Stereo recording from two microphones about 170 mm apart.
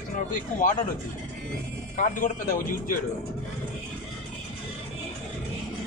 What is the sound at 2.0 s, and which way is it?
Speech, 50° left (ahead or behind).